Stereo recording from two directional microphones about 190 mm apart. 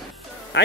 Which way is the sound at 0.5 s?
65° left (ahead or behind).